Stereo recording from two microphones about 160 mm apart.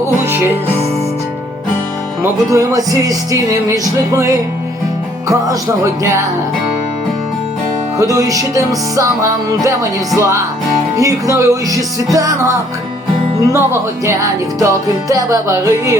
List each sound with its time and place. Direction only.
2.5 s music: 20° right (ahead or behind)
7.9 s music: 20° right (ahead or behind)
10.2 s music: 20° right (ahead or behind)
13.5 s music: 20° right (ahead or behind)